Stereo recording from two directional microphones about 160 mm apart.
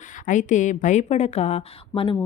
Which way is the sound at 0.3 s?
50° left (ahead or behind).